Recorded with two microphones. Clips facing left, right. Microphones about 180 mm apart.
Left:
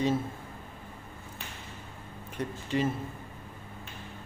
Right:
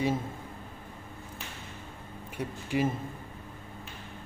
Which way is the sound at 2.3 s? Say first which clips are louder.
Even; 10° right (ahead or behind).